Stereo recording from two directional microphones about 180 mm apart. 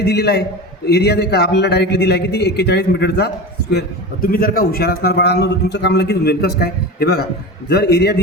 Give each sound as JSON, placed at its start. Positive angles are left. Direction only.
{"t": 0.0, "sound": "a man's voice", "side_deg": 60}